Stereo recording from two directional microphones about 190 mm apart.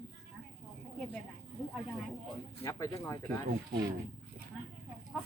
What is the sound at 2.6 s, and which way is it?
Speech, 15° left (ahead or behind).